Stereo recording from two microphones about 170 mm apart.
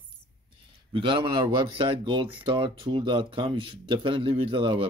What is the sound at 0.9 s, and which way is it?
Speech, 30° right (ahead or behind).